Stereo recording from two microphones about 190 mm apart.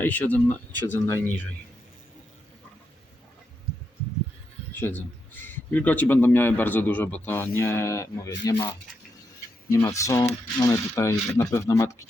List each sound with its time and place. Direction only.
0.0 s a man's voice: 10° left (ahead or behind)
4.8 s a man's voice: 10° left (ahead or behind)